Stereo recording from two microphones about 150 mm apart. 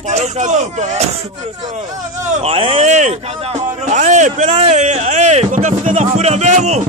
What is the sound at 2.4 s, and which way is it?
Speech, 40° right (ahead or behind).